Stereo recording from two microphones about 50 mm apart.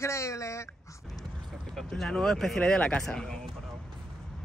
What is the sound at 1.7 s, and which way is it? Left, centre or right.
Speech, centre.